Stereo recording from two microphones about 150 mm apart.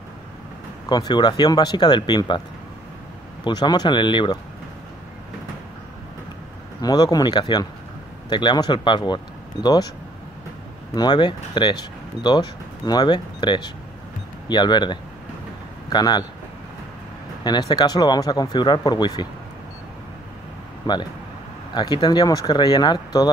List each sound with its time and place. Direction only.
0.8 s speech: 30° left (ahead or behind)
3.4 s speech: 30° left (ahead or behind)
6.8 s speech: 25° left (ahead or behind)
11.0 s speech: 30° left (ahead or behind)
17.4 s speech: 30° left (ahead or behind)
20.8 s speech: 30° left (ahead or behind)